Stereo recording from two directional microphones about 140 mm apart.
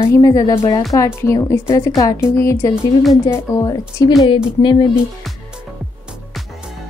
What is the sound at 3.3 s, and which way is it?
Speech, 25° left (ahead or behind).